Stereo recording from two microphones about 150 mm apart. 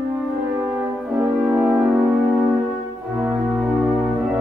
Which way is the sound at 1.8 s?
20° right (ahead or behind).